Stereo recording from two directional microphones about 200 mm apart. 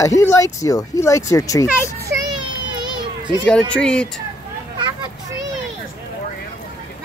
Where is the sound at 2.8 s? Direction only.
20° right (ahead or behind).